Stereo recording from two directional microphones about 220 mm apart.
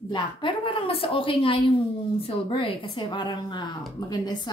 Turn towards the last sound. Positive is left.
turn(degrees=20)  # may be behind; listen again after turning